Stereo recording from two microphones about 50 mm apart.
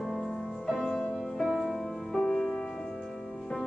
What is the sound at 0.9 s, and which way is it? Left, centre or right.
Music, centre.